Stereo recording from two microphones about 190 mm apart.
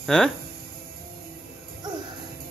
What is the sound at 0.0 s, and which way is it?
Speech, centre (ahead or behind).